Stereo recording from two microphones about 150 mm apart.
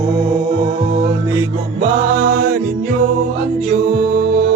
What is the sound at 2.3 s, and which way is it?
Music, 80° right.